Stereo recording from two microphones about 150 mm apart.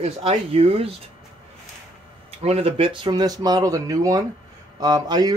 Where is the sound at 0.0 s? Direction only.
40° right (ahead or behind).